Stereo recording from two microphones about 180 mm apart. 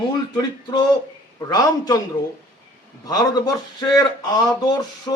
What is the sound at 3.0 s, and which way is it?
A man's voice, 20° left (ahead or behind).